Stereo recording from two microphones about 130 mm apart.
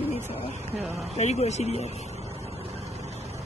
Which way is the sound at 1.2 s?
60° left (ahead or behind).